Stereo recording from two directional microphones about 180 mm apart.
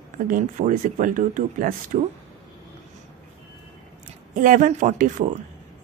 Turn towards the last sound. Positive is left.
turn(degrees=-45)  # may be behind; listen again after turning